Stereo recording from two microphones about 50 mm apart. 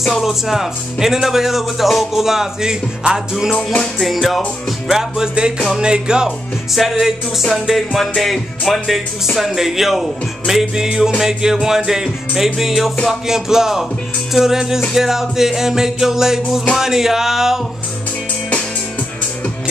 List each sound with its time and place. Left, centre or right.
0.2 s speech: centre
3.5 s music: left
4.0 s music: centre
4.8 s speech: centre
6.7 s music: centre
8.1 s speech: centre